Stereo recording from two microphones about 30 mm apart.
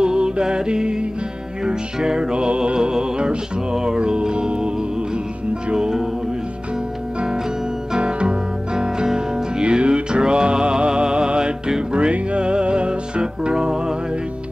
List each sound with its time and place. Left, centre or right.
0.0 s music: right
5.8 s music: centre
8.0 s music: right